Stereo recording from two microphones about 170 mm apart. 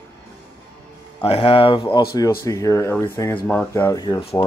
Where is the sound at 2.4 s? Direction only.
20° left (ahead or behind).